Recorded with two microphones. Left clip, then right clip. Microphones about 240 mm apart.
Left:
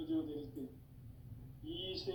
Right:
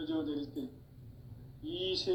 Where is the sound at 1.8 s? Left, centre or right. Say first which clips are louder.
Right 8 dB; right.